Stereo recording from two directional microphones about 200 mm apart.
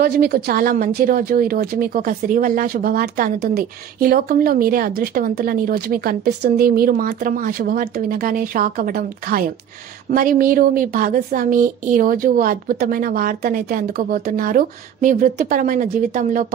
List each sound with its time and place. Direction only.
0.0 s a woman's voice: 50° right (ahead or behind)